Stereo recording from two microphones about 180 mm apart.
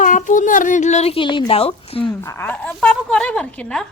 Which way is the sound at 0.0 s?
45° left (ahead or behind).